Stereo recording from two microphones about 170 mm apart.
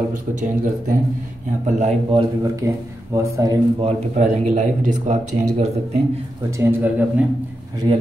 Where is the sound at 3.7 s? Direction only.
40° right (ahead or behind).